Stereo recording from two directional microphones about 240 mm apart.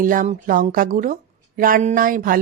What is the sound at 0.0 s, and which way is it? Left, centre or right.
Speech, right.